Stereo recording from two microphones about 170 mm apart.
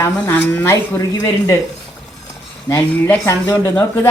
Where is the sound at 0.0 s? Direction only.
15° left (ahead or behind).